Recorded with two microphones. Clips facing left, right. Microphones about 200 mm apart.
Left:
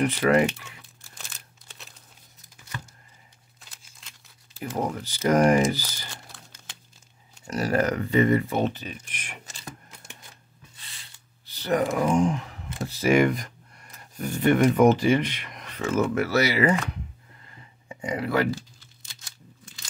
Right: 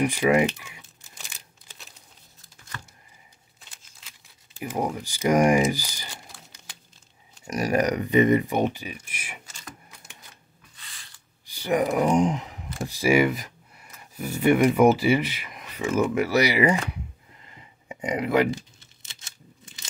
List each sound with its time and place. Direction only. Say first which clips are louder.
0.0 s speech: even; 10° right (ahead or behind)
4.6 s speech: right 1 dB; 15° right (ahead or behind)
11.4 s speech: right 1 dB; 10° right (ahead or behind)
17.5 s tearing: right 2 dB; 15° right (ahead or behind)